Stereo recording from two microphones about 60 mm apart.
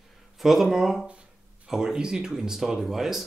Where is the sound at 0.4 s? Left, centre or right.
Centre.